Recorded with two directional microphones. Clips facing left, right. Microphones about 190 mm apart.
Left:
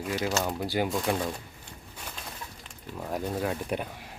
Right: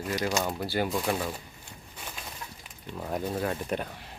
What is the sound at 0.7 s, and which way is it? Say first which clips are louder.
Speech: left 1 dB; 15° left (ahead or behind).